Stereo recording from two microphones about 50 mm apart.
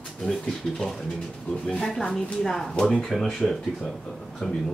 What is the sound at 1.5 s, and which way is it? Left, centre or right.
Speech, left.